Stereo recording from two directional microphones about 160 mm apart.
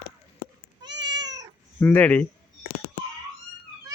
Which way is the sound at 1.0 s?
25° right (ahead or behind).